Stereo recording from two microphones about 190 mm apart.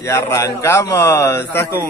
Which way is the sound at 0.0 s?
15° left (ahead or behind).